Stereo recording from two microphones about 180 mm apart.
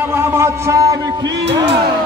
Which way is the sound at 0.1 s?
15° right (ahead or behind).